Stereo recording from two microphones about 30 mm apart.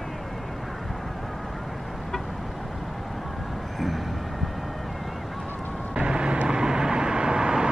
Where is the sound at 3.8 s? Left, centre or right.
Centre.